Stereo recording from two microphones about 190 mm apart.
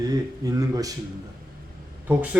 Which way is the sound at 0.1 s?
20° right (ahead or behind).